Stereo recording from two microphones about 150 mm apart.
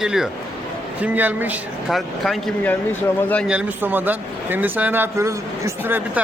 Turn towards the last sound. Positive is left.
turn(degrees=-15)  # may be behind; listen again after turning